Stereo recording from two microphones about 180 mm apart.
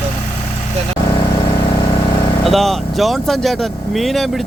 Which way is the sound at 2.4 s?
Centre (ahead or behind).